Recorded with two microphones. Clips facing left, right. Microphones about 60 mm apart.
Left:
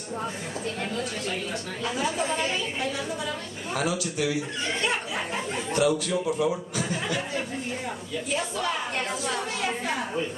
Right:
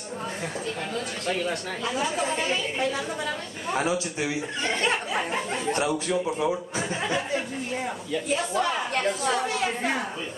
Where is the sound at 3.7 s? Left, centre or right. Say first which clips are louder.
Right 1 dB; right.